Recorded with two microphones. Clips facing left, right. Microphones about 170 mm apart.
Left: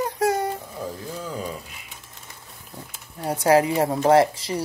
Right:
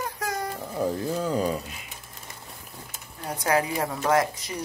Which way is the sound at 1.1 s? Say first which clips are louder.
Right 5 dB; 55° right (ahead or behind).